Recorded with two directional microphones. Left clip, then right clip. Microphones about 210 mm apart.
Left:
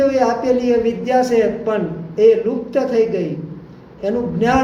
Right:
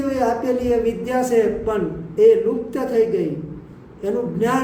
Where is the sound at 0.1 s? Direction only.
20° right (ahead or behind).